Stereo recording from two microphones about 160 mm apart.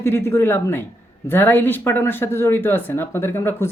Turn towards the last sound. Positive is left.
turn(degrees=15)  # may be behind; listen again after turning